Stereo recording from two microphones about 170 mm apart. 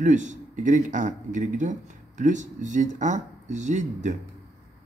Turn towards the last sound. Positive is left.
turn(degrees=-45)  # may be behind; listen again after turning